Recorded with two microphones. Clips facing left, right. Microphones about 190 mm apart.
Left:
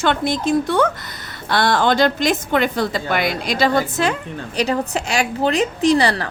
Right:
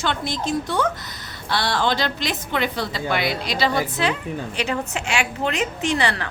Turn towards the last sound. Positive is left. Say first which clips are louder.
# left 7 dB
turn(degrees=35)  # may be behind; listen again after turning